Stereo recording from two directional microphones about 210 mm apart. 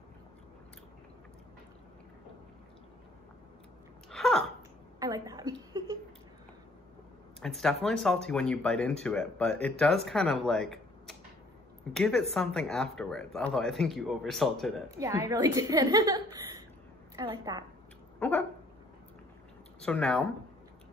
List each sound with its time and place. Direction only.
4.1 s a sound: centre (ahead or behind)
5.0 s a sound: 15° right (ahead or behind)
7.4 s speech: centre (ahead or behind)
15.0 s a woman's voice: 15° right (ahead or behind)
18.2 s speech: 5° left (ahead or behind)
19.8 s speech: 5° left (ahead or behind)